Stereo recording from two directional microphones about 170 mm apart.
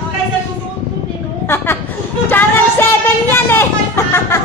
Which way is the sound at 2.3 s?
10° left (ahead or behind).